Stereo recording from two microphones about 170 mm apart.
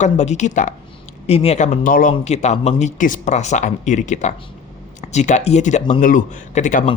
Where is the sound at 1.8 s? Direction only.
55° left (ahead or behind).